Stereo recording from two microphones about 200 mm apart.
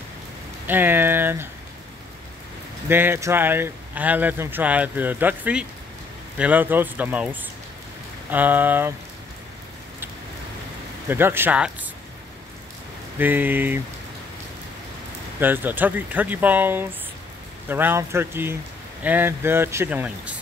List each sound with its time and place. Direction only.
0.7 s speech: 10° right (ahead or behind)
2.9 s speech: 10° right (ahead or behind)
11.1 s speech: 10° right (ahead or behind)
13.2 s speech: 10° right (ahead or behind)
15.4 s speech: 10° right (ahead or behind)